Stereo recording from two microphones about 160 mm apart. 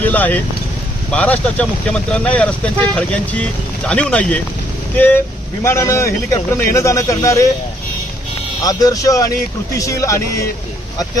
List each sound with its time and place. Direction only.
0.0 s a man's voice: 10° left (ahead or behind)
8.6 s a man's voice: 20° left (ahead or behind)